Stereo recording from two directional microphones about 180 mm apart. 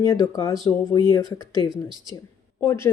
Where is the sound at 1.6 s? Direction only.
25° left (ahead or behind).